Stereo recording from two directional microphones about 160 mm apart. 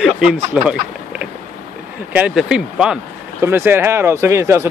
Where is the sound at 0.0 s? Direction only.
5° right (ahead or behind).